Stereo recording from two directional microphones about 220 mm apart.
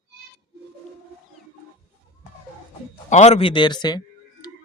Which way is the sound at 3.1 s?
30° left (ahead or behind).